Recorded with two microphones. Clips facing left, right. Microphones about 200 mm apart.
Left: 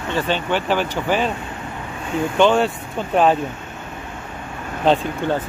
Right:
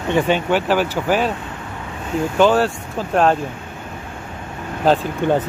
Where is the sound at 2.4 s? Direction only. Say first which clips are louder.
Right 1 dB; 5° right (ahead or behind).